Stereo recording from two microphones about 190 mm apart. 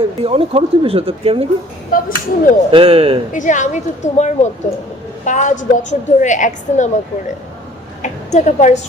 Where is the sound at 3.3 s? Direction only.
40° left (ahead or behind).